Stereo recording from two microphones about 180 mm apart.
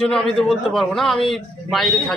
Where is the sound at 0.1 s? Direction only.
Centre (ahead or behind).